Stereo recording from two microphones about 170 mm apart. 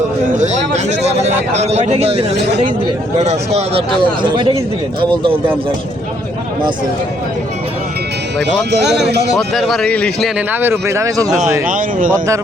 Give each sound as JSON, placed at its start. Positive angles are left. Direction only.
{"t": 0.4, "sound": "a man's voice", "side_deg": -45}
{"t": 2.3, "sound": "speech", "side_deg": -80}
{"t": 3.2, "sound": "a man's voice", "side_deg": -40}
{"t": 9.5, "sound": "a man's voice", "side_deg": 0}
{"t": 10.5, "sound": "speech", "side_deg": -15}
{"t": 11.7, "sound": "speech", "side_deg": -50}